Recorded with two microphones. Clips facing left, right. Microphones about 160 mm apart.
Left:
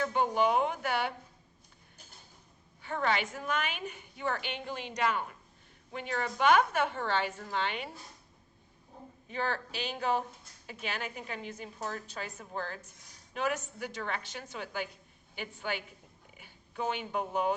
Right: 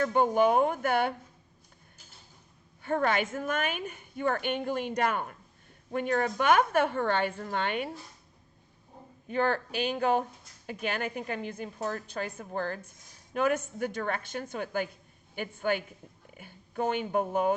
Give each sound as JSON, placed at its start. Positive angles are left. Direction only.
{"t": 0.0, "sound": "a woman's voice", "side_deg": -45}
{"t": 2.8, "sound": "a woman's voice", "side_deg": -50}
{"t": 9.3, "sound": "a woman's voice", "side_deg": -50}